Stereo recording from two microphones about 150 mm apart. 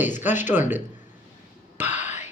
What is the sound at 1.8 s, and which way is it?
Throat clearing, 50° left (ahead or behind).